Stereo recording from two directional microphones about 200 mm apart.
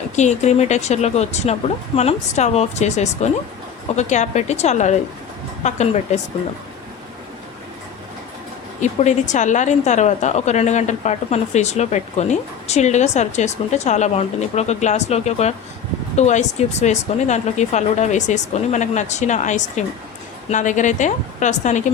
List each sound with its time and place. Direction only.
0.2 s a woman's voice: 35° left (ahead or behind)
8.8 s a woman's voice: 35° left (ahead or behind)